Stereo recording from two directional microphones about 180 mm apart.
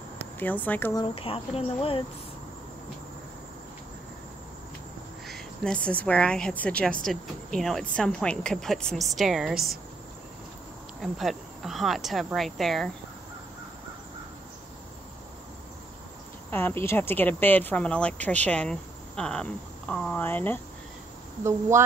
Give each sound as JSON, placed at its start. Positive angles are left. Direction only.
{"t": 0.4, "sound": "speech", "side_deg": 10}
{"t": 0.9, "sound": "speech", "side_deg": 30}
{"t": 5.3, "sound": "speech", "side_deg": 5}
{"t": 11.0, "sound": "speech", "side_deg": 0}
{"t": 16.4, "sound": "speech", "side_deg": 10}
{"t": 21.5, "sound": "a woman's voice", "side_deg": -15}